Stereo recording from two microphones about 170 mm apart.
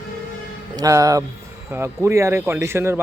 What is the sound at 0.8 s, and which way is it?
Speech, 20° right (ahead or behind).